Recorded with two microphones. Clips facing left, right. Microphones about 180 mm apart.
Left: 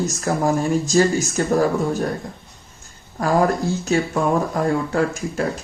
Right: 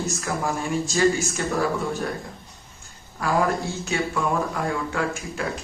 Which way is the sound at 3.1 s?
40° left (ahead or behind).